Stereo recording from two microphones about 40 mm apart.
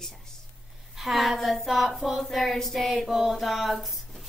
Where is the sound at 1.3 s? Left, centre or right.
Centre.